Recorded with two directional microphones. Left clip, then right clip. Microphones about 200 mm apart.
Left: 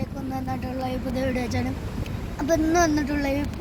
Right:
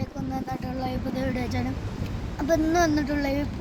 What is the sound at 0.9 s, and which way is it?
Speech, 15° right (ahead or behind).